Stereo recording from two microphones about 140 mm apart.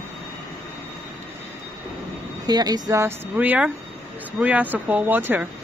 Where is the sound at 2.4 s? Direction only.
30° right (ahead or behind).